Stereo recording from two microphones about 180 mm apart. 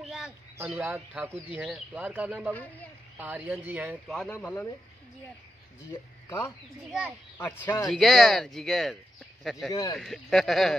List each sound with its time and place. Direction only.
0.0 s a sound: centre (ahead or behind)
0.6 s speech: 10° right (ahead or behind)
2.5 s a man's voice: 10° left (ahead or behind)
3.2 s speech: 10° right (ahead or behind)
4.3 s a man's voice: 10° left (ahead or behind)
6.9 s speech: centre (ahead or behind)
7.3 s speech: 10° left (ahead or behind)
9.7 s speech: 20° left (ahead or behind)
9.9 s speech: centre (ahead or behind)